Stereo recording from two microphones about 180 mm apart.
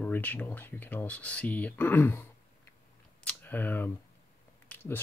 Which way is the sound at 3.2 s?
10° left (ahead or behind).